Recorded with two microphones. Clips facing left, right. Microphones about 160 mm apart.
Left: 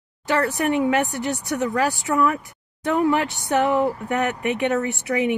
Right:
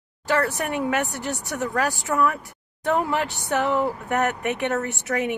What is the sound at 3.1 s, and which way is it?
Speech, 15° left (ahead or behind).